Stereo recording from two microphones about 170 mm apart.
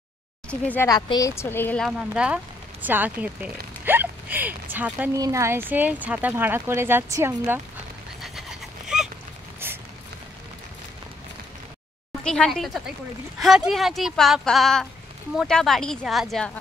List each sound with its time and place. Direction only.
0.5 s speech: 10° left (ahead or behind)
0.8 s speech: 25° left (ahead or behind)
1.9 s speech: 5° right (ahead or behind)
8.2 s a sound: centre (ahead or behind)
12.2 s speech: 5° left (ahead or behind)